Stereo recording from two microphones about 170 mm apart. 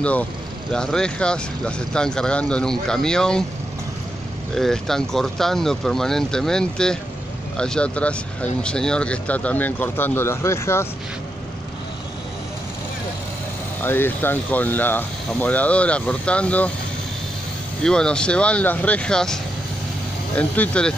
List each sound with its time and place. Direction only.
0.0 s speech: 10° left (ahead or behind)
4.6 s speech: centre (ahead or behind)
13.7 s speech: 10° left (ahead or behind)
17.8 s speech: 5° left (ahead or behind)